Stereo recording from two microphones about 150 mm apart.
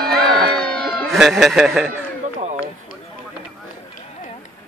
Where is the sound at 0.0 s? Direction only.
5° left (ahead or behind).